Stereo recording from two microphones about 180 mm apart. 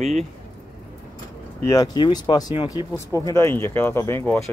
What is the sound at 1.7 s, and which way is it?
Speech, 25° left (ahead or behind).